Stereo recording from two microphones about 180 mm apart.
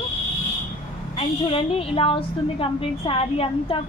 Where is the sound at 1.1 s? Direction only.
30° left (ahead or behind).